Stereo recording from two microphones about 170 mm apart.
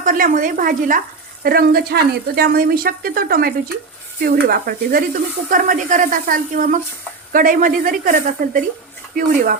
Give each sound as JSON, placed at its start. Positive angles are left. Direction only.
{"t": 0.0, "sound": "speech", "side_deg": -50}
{"t": 1.5, "sound": "speech", "side_deg": -65}